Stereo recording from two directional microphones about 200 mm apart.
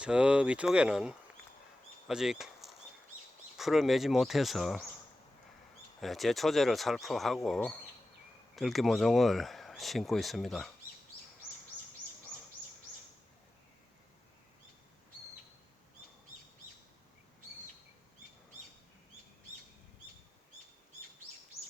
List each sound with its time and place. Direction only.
0.0 s speech: 5° right (ahead or behind)
6.0 s speech: centre (ahead or behind)